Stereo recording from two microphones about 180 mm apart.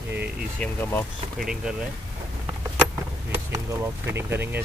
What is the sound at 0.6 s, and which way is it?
Speech, 10° left (ahead or behind).